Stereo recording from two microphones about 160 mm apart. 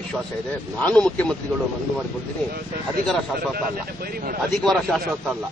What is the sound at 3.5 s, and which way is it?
Speech, 65° right (ahead or behind).